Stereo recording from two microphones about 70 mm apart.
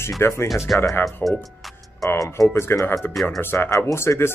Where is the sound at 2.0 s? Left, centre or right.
Left.